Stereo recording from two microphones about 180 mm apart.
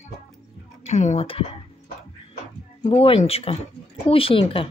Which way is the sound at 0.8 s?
40° left (ahead or behind).